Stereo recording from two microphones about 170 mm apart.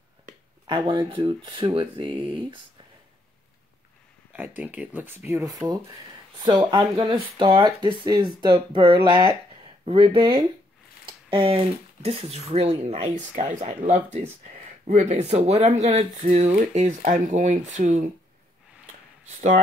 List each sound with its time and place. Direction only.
0.7 s speech: 25° right (ahead or behind)
4.3 s speech: 10° right (ahead or behind)
6.6 s speech: 30° right (ahead or behind); by 18.1 s 45° right (ahead or behind)